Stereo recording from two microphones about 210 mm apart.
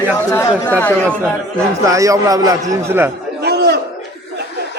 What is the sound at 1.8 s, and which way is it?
A man's voice, 15° right (ahead or behind).